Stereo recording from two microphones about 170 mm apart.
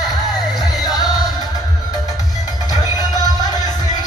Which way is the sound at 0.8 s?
25° left (ahead or behind).